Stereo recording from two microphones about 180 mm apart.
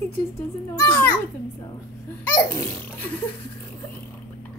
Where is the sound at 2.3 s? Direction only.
10° left (ahead or behind).